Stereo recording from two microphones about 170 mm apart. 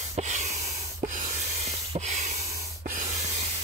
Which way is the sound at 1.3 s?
40° right (ahead or behind).